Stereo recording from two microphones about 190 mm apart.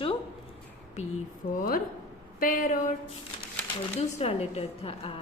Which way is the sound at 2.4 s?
45° left (ahead or behind).